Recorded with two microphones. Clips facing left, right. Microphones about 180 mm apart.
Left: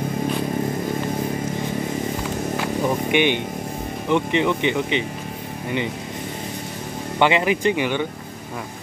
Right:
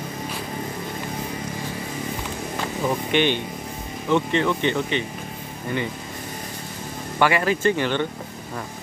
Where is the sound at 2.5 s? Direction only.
10° left (ahead or behind).